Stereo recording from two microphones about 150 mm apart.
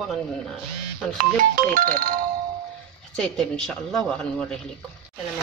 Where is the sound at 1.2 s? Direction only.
70° right (ahead or behind).